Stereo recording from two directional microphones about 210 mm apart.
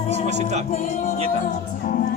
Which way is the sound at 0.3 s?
35° right (ahead or behind).